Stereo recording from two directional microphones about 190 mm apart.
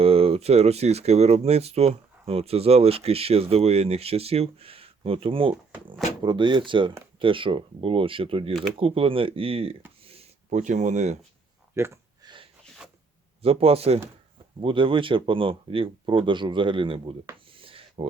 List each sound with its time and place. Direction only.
0.0 s speech: 30° right (ahead or behind)
10.1 s a sound: 35° right (ahead or behind)
11.7 s a sound: 15° right (ahead or behind)
12.8 s zipper: 5° right (ahead or behind)
13.4 s speech: 30° right (ahead or behind)
17.6 s writing: 30° right (ahead or behind)